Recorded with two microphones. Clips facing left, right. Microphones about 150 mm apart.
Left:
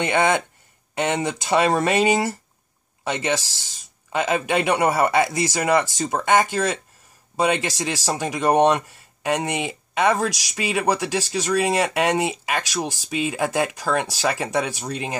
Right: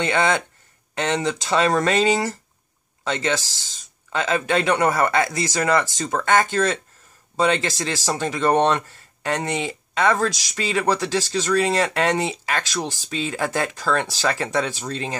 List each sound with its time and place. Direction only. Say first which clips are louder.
0.0 s speech: left 1 dB; 15° left (ahead or behind)